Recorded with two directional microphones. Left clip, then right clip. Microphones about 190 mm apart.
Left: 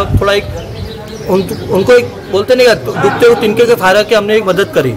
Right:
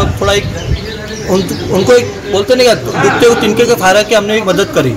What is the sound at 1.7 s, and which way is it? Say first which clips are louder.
A man's voice: left 1 dB; 5° left (ahead or behind).